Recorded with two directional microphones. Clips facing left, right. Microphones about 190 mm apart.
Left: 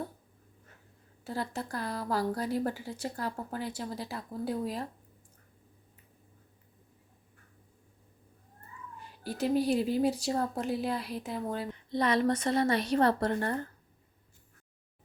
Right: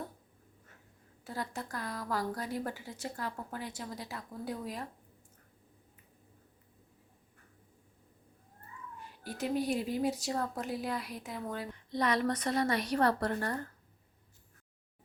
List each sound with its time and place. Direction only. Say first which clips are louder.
1.2 s a woman's voice: left 4 dB; 30° left (ahead or behind)
9.2 s a woman's voice: left 5 dB; 35° left (ahead or behind)